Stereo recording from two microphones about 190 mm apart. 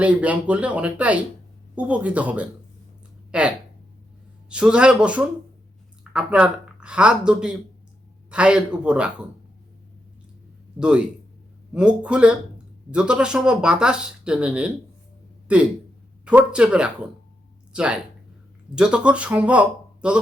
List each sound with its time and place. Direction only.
0.0 s speech: 5° right (ahead or behind)
4.4 s speech: 5° right (ahead or behind)
10.8 s speech: 5° right (ahead or behind)